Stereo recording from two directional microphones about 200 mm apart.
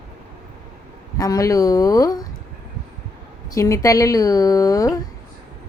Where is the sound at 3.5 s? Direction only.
15° left (ahead or behind).